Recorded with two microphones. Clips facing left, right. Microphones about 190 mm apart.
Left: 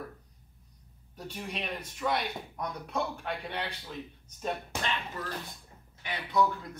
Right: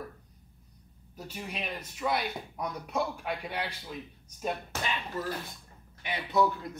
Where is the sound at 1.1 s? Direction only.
5° right (ahead or behind).